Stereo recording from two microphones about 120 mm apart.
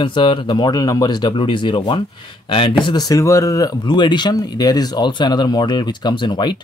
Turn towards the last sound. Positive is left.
turn(degrees=40)  # may be behind; listen again after turning